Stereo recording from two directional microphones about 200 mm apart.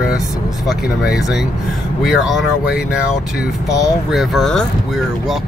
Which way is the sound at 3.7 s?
Centre (ahead or behind).